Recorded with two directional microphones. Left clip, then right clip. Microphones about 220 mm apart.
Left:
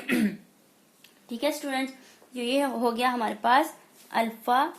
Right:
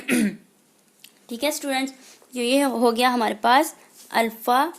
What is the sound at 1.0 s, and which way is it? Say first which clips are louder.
A woman's voice: right 3 dB; 50° right (ahead or behind).